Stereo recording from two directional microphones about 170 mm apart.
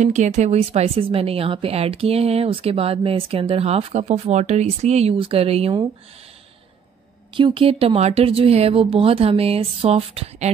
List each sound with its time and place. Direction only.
0.0 s speech: 45° right (ahead or behind)
7.3 s speech: 30° right (ahead or behind)